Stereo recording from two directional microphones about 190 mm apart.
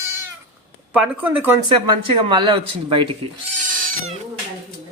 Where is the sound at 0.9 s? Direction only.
10° right (ahead or behind).